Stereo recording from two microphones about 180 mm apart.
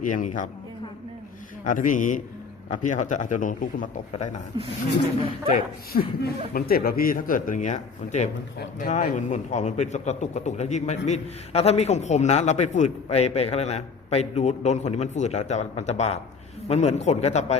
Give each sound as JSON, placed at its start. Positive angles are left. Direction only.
{"t": 0.0, "sound": "speech", "side_deg": 45}
{"t": 1.6, "sound": "speech", "side_deg": 45}
{"t": 5.5, "sound": "a man's voice", "side_deg": 55}